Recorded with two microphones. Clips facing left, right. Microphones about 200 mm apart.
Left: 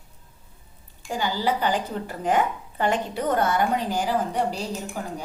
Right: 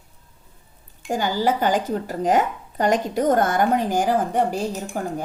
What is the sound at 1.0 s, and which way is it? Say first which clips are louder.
Speech: right 4 dB; 45° right (ahead or behind).